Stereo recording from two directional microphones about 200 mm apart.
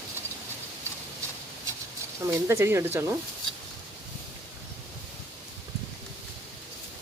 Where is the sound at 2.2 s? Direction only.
15° right (ahead or behind).